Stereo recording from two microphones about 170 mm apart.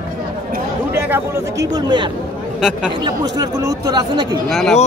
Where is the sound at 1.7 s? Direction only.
25° right (ahead or behind).